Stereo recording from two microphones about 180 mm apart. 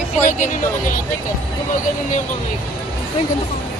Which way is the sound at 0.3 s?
45° left (ahead or behind).